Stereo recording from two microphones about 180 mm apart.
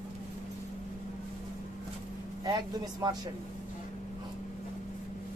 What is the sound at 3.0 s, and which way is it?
Speech, 20° right (ahead or behind).